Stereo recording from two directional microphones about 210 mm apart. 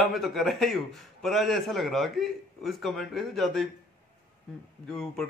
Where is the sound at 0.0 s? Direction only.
Centre (ahead or behind).